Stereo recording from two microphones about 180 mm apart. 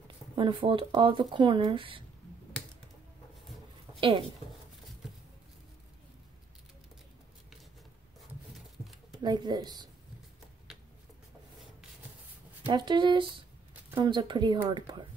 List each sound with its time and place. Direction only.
0.4 s speech: 30° right (ahead or behind)
9.2 s speech: 25° right (ahead or behind)
12.6 s speech: 25° right (ahead or behind)